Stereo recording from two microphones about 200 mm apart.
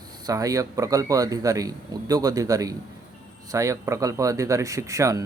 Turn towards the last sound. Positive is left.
turn(degrees=-15)  # may be behind; listen again after turning